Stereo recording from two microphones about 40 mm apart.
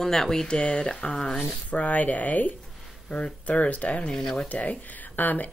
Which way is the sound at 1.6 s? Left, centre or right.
Left.